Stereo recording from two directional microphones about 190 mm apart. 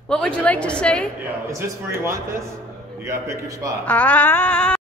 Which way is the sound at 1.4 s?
15° right (ahead or behind).